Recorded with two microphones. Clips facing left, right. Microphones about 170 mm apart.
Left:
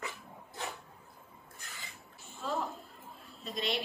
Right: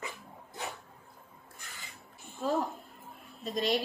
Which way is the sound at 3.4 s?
40° right (ahead or behind).